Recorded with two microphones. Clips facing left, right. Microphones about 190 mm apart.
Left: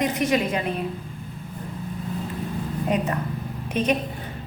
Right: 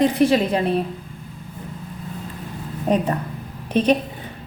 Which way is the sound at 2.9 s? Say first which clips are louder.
Right 5 dB; 35° right (ahead or behind).